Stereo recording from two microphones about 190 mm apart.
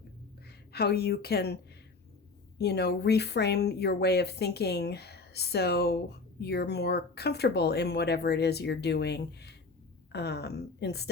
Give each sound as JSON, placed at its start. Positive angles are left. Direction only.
{"t": 0.7, "sound": "speech", "side_deg": 55}
{"t": 2.6, "sound": "speech", "side_deg": 60}